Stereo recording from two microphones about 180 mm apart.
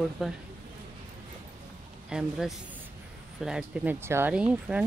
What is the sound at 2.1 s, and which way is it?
Speech, 5° right (ahead or behind).